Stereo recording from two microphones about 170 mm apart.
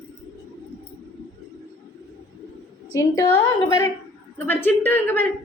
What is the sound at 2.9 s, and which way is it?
A woman's voice, 20° left (ahead or behind).